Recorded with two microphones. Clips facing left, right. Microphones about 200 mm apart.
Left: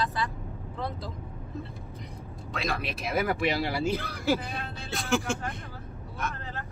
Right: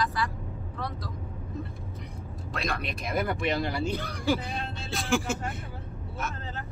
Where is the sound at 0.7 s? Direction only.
25° left (ahead or behind).